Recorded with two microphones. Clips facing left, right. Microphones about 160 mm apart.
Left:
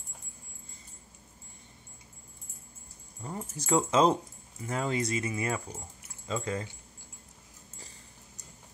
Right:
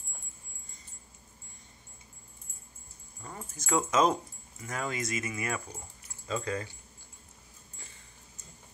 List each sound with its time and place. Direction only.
3.2 s keys jangling: 20° left (ahead or behind)
3.5 s speech: 30° left (ahead or behind)